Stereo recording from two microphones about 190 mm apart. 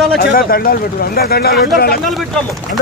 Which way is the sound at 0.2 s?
50° left (ahead or behind).